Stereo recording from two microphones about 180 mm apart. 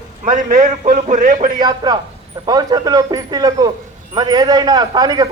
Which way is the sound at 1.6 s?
25° right (ahead or behind).